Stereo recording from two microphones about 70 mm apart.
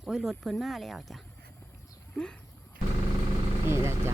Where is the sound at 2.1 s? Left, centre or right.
Centre.